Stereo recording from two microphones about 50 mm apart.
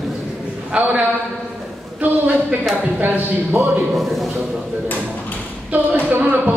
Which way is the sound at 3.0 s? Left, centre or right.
Right.